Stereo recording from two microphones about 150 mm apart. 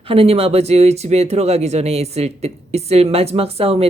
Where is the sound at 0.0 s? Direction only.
40° right (ahead or behind).